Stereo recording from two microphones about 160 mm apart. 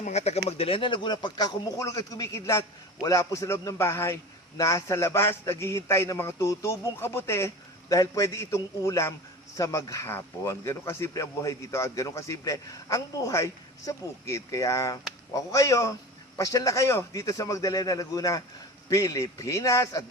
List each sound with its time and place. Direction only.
0.0 s a man's voice: 45° left (ahead or behind); by 20.1 s 20° left (ahead or behind)